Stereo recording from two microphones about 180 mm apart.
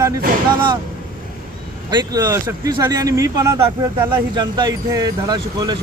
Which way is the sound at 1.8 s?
20° right (ahead or behind).